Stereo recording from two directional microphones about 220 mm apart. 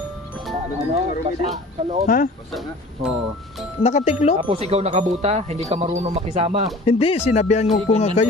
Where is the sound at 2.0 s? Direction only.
40° left (ahead or behind).